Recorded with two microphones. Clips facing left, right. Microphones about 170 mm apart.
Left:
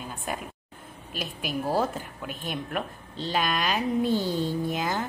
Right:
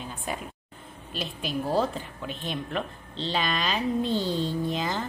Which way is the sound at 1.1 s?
5° left (ahead or behind).